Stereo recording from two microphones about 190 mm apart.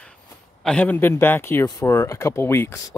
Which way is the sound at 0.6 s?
5° left (ahead or behind).